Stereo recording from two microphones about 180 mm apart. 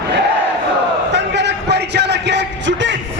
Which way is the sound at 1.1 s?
75° right (ahead or behind).